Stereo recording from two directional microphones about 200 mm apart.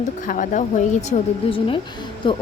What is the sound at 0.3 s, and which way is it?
Speech, 40° left (ahead or behind).